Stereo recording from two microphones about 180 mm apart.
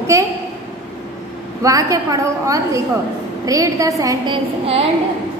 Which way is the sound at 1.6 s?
20° right (ahead or behind).